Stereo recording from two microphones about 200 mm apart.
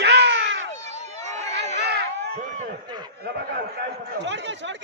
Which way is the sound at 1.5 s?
60° right (ahead or behind).